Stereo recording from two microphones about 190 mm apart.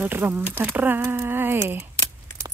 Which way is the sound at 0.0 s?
10° right (ahead or behind).